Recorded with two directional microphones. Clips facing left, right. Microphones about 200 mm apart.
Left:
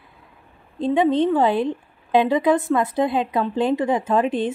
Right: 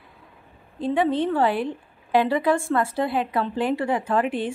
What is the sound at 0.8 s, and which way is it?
A woman's voice, 20° left (ahead or behind).